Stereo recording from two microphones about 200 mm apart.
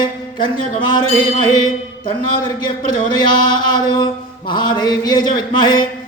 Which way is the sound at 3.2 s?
20° left (ahead or behind).